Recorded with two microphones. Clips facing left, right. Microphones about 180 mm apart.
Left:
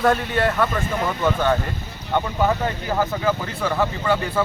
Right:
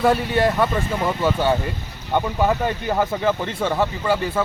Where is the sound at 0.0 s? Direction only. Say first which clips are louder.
Right 2 dB; 10° right (ahead or behind).